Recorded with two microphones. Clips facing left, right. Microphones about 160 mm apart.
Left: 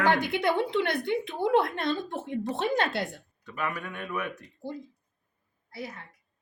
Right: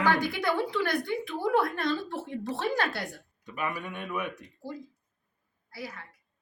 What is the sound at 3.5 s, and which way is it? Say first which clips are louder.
Speech: even; 15° right (ahead or behind).